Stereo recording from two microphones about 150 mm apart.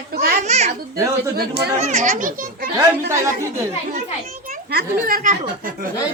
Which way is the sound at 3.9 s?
60° right (ahead or behind).